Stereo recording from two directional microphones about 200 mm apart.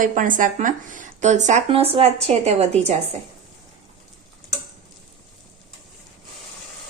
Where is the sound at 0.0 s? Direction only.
40° right (ahead or behind).